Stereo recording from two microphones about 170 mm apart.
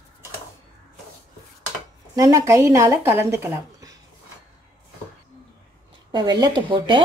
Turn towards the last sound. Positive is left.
turn(degrees=-30)  # may be behind; listen again after turning